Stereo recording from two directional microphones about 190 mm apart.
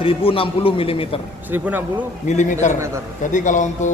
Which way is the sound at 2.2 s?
40° left (ahead or behind).